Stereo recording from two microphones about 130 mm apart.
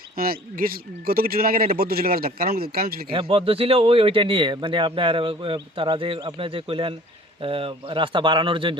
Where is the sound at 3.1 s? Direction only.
45° right (ahead or behind).